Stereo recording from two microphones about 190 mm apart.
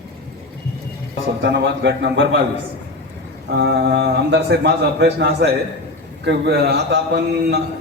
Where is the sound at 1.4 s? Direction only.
70° right (ahead or behind).